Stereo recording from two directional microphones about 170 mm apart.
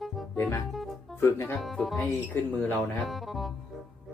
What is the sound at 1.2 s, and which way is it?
Speech, 15° left (ahead or behind).